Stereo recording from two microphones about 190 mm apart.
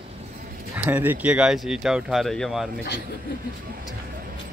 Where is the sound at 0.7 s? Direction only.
10° right (ahead or behind).